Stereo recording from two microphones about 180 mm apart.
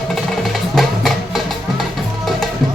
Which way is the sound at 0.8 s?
Centre (ahead or behind).